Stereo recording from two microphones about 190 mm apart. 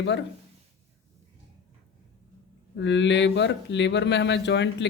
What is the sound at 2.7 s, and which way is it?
Speech, 70° left (ahead or behind).